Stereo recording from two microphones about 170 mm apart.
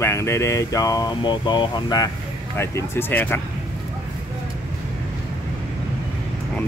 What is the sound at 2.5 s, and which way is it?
Speech, 15° left (ahead or behind).